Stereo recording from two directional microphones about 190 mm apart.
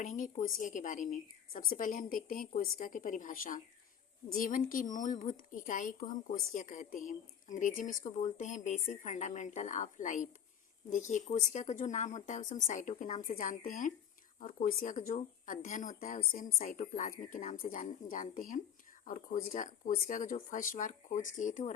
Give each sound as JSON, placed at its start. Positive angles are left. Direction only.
{"t": 0.0, "sound": "a woman's voice", "side_deg": 40}